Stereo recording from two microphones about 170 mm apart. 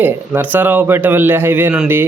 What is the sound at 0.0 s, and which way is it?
A man's voice, 10° right (ahead or behind).